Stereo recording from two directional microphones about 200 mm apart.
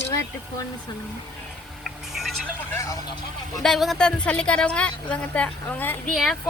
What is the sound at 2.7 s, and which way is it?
Speech, 15° left (ahead or behind).